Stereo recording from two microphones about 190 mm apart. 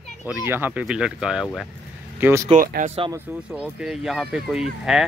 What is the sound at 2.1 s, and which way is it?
Speech, 10° right (ahead or behind).